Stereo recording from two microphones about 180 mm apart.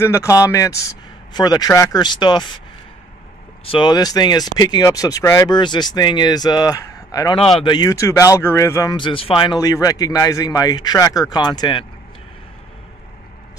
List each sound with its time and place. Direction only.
0.0 s speech: 15° left (ahead or behind)
3.6 s speech: 25° left (ahead or behind)
8.9 s speech: 30° left (ahead or behind)